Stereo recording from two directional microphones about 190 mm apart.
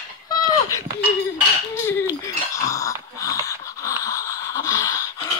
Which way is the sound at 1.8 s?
15° left (ahead or behind).